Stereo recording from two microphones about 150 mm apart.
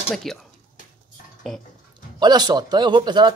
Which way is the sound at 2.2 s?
30° right (ahead or behind).